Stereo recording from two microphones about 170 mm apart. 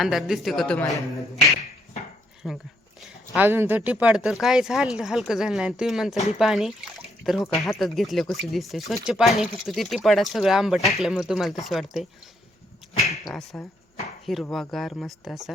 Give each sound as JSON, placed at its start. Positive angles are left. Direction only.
{"t": 0.0, "sound": "speech", "side_deg": 0}
{"t": 2.4, "sound": "speech", "side_deg": 0}
{"t": 12.9, "sound": "a sound", "side_deg": 40}
{"t": 13.2, "sound": "speech", "side_deg": 5}